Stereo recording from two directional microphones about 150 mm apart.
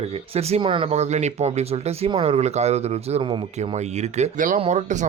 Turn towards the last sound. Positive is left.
turn(degrees=-50)  # may be behind; listen again after turning